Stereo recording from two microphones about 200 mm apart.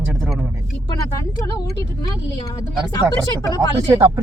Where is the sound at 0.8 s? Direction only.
20° left (ahead or behind).